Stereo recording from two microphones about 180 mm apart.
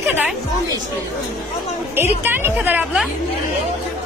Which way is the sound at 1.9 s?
10° right (ahead or behind).